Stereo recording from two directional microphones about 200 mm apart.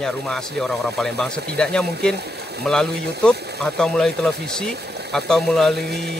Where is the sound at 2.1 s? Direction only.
55° right (ahead or behind).